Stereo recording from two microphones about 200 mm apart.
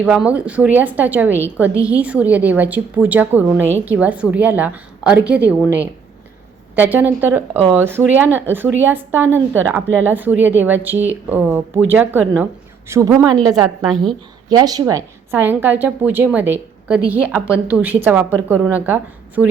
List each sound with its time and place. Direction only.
0.0 s a woman's voice: 5° right (ahead or behind)
13.8 s a woman's voice: centre (ahead or behind)
14.5 s a woman's voice: 20° right (ahead or behind)